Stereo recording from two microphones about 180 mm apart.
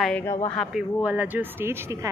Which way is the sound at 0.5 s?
Centre (ahead or behind).